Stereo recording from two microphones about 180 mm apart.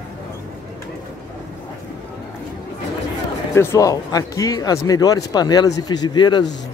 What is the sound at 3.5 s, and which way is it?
Speech, 15° left (ahead or behind).